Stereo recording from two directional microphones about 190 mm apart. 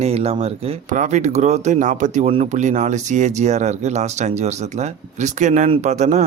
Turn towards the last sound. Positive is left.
turn(degrees=-35)  # may be behind; listen again after turning